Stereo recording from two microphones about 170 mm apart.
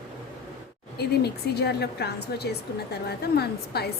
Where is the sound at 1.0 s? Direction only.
70° left (ahead or behind).